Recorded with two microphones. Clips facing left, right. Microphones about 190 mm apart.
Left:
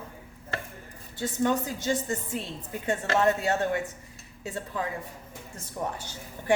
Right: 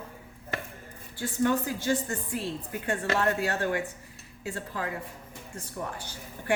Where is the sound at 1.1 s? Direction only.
20° left (ahead or behind).